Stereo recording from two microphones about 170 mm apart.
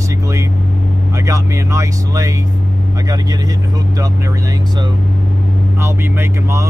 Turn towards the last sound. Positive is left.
turn(degrees=-15)  # may be behind; listen again after turning